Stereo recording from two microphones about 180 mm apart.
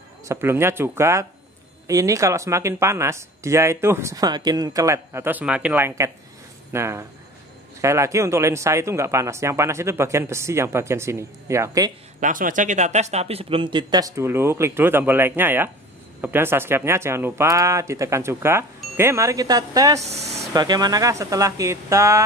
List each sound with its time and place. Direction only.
0.2 s speech: 15° right (ahead or behind)
12.2 s speech: 50° right (ahead or behind); by 20.0 s 20° right (ahead or behind)
20.0 s speech: 35° right (ahead or behind)
20.5 s speech: 20° right (ahead or behind)